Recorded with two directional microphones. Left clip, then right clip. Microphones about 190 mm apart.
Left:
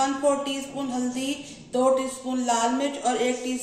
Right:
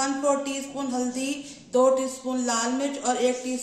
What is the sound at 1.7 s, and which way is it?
Speech, 55° right (ahead or behind).